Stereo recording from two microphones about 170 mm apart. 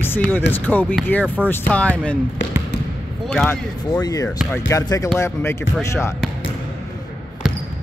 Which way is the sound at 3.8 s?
20° left (ahead or behind).